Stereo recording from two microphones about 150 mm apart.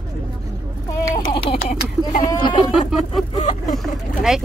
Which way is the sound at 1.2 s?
35° left (ahead or behind).